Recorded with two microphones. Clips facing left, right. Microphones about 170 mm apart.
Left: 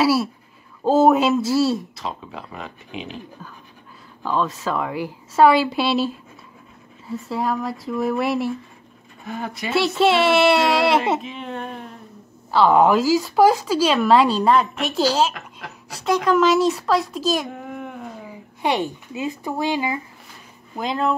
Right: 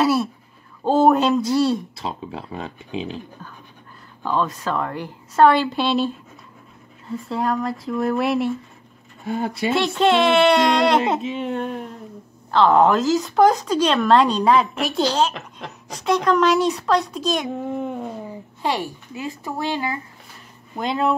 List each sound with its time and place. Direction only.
0.0 s speech: 5° left (ahead or behind)
2.0 s speech: 30° right (ahead or behind)
4.2 s speech: centre (ahead or behind)
9.2 s speech: 30° right (ahead or behind)
9.8 s speech: 5° left (ahead or behind)
12.4 s speech: 5° left (ahead or behind)
17.6 s a sound: 30° right (ahead or behind)
18.6 s speech: 20° left (ahead or behind)
20.7 s speech: centre (ahead or behind)